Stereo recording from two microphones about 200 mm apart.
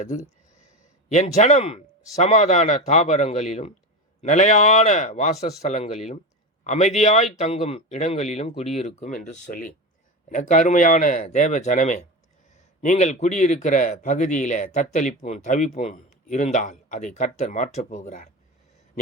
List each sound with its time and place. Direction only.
1.1 s speech: 35° left (ahead or behind)